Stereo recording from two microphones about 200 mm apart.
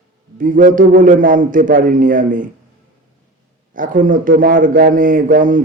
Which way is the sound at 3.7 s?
40° right (ahead or behind).